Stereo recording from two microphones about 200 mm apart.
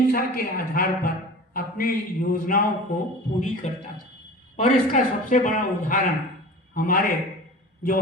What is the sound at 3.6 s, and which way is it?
Speech, 35° left (ahead or behind).